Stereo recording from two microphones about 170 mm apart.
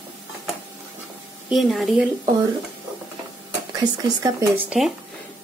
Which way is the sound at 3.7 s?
20° right (ahead or behind).